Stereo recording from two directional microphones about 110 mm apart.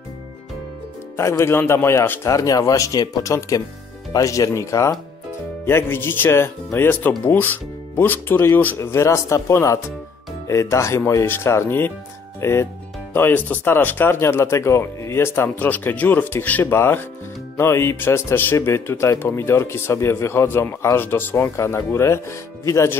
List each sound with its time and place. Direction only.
1.1 s a man's voice: 25° left (ahead or behind)